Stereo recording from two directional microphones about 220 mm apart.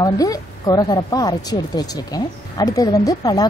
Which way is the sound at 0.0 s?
15° left (ahead or behind).